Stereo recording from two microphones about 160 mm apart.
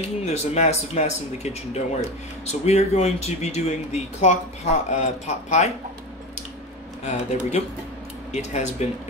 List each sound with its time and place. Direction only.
0.2 s speech: 45° left (ahead or behind)
7.1 s speech: 45° left (ahead or behind)